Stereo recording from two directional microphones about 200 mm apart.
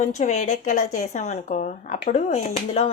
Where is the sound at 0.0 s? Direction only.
35° left (ahead or behind).